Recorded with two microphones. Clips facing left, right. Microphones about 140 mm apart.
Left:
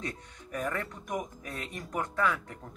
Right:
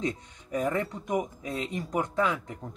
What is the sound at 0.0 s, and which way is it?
Speech, 20° right (ahead or behind).